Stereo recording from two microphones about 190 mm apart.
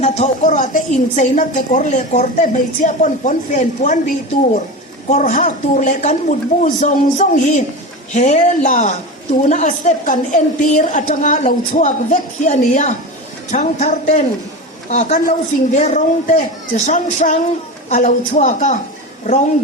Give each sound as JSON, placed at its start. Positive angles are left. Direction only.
{"t": 0.0, "sound": "a woman's voice", "side_deg": 40}